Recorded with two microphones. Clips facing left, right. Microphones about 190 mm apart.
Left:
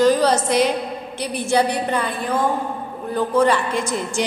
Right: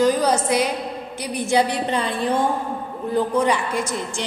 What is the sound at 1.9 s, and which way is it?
Speech, 25° right (ahead or behind).